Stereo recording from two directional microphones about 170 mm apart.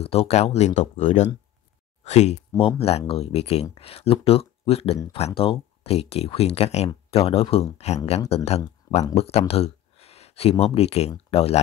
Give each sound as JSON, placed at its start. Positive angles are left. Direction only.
{"t": 0.0, "sound": "speech", "side_deg": 35}
{"t": 9.5, "sound": "a sound", "side_deg": 35}
{"t": 10.6, "sound": "speech", "side_deg": 35}